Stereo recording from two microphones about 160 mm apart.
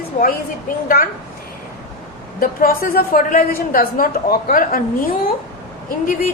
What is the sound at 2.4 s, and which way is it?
A woman's voice, 65° left (ahead or behind).